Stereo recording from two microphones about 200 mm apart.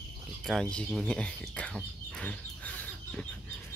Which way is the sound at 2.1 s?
5° left (ahead or behind).